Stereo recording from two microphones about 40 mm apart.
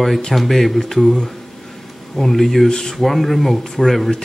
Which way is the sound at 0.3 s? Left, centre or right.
Centre.